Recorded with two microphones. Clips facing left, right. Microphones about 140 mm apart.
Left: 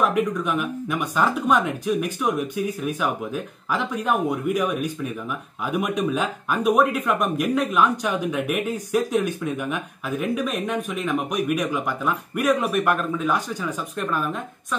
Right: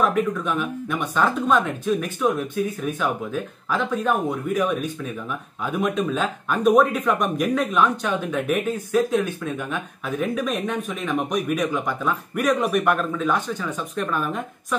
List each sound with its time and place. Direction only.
0.1 s speech: 10° left (ahead or behind)